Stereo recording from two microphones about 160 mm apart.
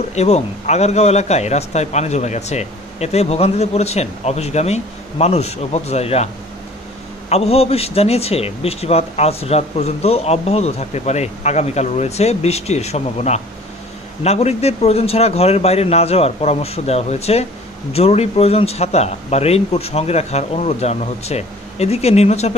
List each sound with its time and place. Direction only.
0.1 s a man's voice: 45° left (ahead or behind)
7.2 s a man's voice: 40° left (ahead or behind)